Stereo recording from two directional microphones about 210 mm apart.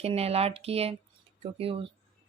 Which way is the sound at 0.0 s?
30° right (ahead or behind).